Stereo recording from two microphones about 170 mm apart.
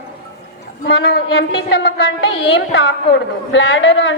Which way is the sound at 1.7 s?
75° left (ahead or behind).